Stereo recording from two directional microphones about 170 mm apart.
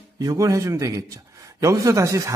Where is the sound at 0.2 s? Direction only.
20° right (ahead or behind).